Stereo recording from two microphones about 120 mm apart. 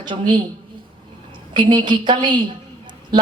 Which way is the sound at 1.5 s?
40° right (ahead or behind).